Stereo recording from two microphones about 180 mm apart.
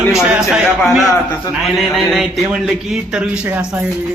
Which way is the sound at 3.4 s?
10° right (ahead or behind).